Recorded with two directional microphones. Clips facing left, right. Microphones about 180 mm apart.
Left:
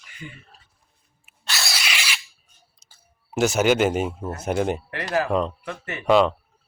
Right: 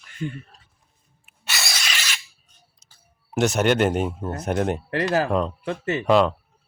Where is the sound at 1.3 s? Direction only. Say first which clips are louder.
Left 1 dB; centre (ahead or behind).